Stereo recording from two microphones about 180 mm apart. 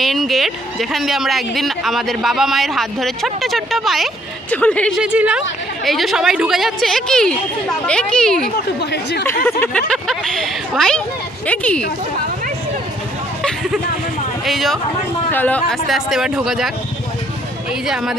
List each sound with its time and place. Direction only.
0.0 s speech: centre (ahead or behind)
5.0 s speech: 5° right (ahead or behind)
8.5 s speech: 65° left (ahead or behind)
9.6 s speech: 5° left (ahead or behind)
14.4 s speech: centre (ahead or behind)
17.8 s speech: centre (ahead or behind)